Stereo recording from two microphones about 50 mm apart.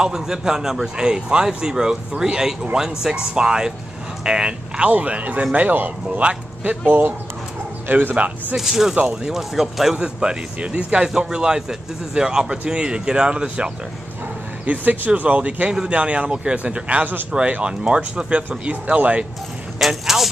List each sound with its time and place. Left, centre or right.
0.0 s a man's voice: centre
4.9 s speech: right
6.9 s a man's voice: right
8.5 s a man's voice: centre
10.0 s a man's voice: centre
14.7 s speech: right
19.8 s speech: centre